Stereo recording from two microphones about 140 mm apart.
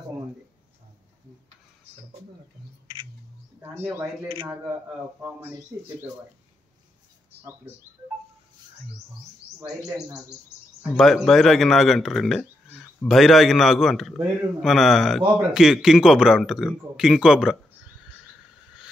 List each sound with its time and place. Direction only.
3.6 s speech: 15° right (ahead or behind)
11.0 s a man's voice: centre (ahead or behind)
12.6 s a sound: 10° left (ahead or behind)
13.1 s a man's voice: centre (ahead or behind)